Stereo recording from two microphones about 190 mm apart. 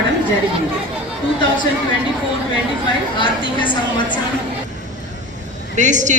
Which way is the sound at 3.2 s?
25° left (ahead or behind).